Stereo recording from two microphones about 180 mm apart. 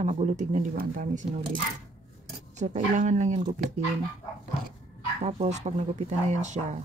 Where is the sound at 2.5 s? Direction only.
40° right (ahead or behind).